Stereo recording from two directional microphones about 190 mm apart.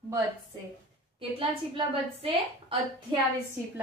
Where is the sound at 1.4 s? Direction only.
30° right (ahead or behind).